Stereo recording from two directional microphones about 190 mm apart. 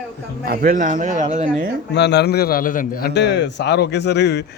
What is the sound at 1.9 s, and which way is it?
A man's voice, 65° left (ahead or behind).